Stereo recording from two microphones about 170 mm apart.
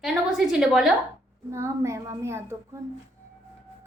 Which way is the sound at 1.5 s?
15° right (ahead or behind).